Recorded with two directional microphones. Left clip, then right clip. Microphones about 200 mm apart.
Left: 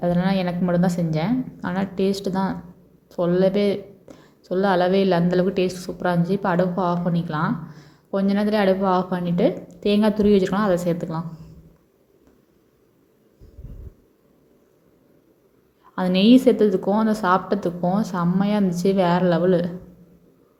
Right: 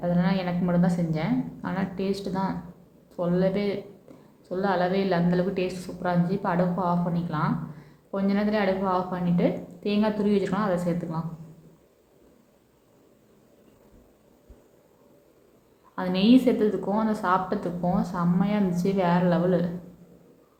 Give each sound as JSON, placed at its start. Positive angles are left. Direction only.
{"t": 0.0, "sound": "speech", "side_deg": 30}
{"t": 16.0, "sound": "a woman's voice", "side_deg": 30}